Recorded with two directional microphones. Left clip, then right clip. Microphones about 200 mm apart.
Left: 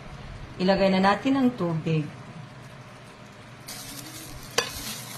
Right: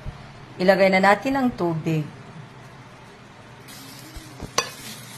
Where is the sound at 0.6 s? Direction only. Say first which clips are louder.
Right 5 dB; 20° right (ahead or behind).